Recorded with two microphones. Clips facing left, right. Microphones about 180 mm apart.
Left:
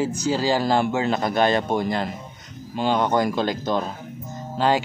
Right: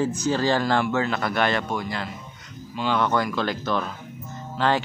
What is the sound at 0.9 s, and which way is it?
Speech, 20° left (ahead or behind).